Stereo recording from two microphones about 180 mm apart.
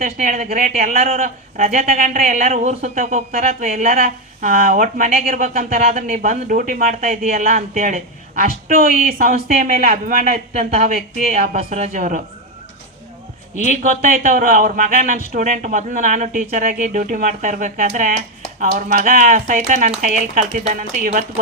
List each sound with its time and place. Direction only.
0.0 s speech: 50° right (ahead or behind)
11.5 s speech: 40° right (ahead or behind)
14.1 s speech: 45° right (ahead or behind)